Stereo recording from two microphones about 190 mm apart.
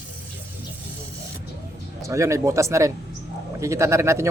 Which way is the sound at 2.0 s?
15° right (ahead or behind).